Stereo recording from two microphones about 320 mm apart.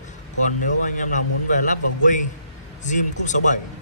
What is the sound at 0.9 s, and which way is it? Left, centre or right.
Speech, left.